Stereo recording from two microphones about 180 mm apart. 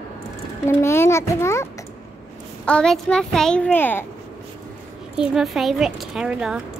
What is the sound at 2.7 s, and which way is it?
A child's voice, 5° left (ahead or behind).